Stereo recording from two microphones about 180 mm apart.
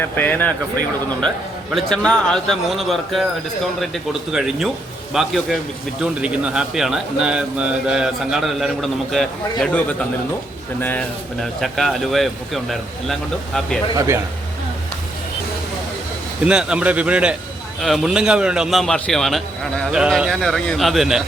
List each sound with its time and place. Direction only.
0.0 s speech: 10° left (ahead or behind)
1.7 s speech: 5° left (ahead or behind)
13.9 s speech: 20° right (ahead or behind)
16.4 s speech: 5° right (ahead or behind)